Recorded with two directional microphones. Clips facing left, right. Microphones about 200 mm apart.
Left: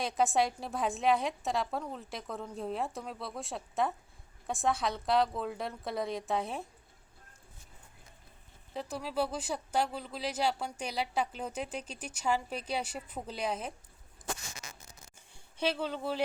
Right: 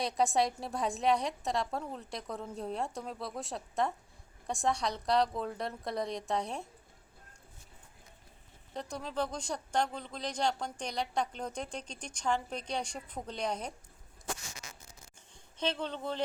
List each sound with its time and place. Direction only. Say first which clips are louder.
0.0 s speech: even; centre (ahead or behind)
8.7 s speech: left 2 dB; 5° left (ahead or behind)
15.5 s speech: left 2 dB; 10° left (ahead or behind)